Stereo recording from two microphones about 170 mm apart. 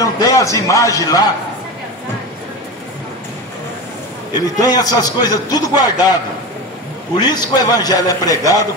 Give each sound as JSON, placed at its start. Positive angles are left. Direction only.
{"t": 0.0, "sound": "a man's voice", "side_deg": 20}
{"t": 4.6, "sound": "a man's voice", "side_deg": 20}
{"t": 7.2, "sound": "a man's voice", "side_deg": 25}